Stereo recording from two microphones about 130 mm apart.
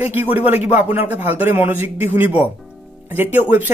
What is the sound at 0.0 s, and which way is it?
Speech, 15° right (ahead or behind).